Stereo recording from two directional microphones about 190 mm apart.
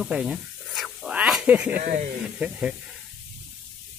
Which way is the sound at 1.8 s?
45° right (ahead or behind).